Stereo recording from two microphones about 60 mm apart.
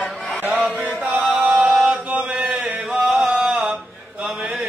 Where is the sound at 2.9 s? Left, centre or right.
Centre.